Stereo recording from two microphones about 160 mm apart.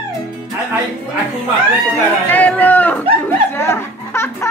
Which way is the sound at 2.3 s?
10° left (ahead or behind).